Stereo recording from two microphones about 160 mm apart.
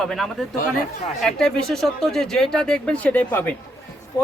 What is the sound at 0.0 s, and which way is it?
Speech, 5° left (ahead or behind).